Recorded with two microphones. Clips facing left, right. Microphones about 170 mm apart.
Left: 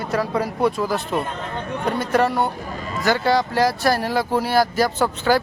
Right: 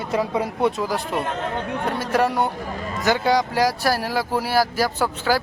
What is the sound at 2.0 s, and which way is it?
Speech, 10° right (ahead or behind).